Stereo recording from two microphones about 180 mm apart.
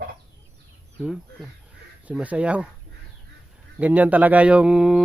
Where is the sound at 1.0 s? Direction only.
5° right (ahead or behind).